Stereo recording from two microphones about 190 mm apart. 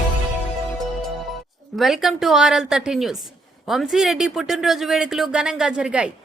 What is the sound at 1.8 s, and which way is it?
Speech, centre (ahead or behind).